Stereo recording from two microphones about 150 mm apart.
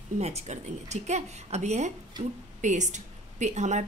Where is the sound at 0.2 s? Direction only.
45° right (ahead or behind).